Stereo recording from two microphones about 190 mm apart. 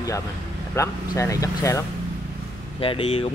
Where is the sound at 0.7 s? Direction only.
15° left (ahead or behind).